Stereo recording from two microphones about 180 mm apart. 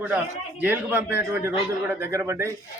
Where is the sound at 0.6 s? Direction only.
10° right (ahead or behind).